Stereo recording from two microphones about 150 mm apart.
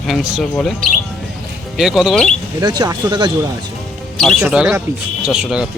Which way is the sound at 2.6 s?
25° right (ahead or behind).